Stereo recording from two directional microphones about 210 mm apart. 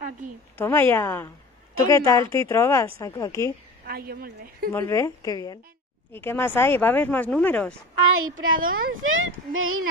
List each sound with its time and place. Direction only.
0.6 s speech: 10° left (ahead or behind)
3.8 s a woman's voice: 45° right (ahead or behind)
4.7 s speech: 10° left (ahead or behind)
8.4 s speech: 75° right (ahead or behind)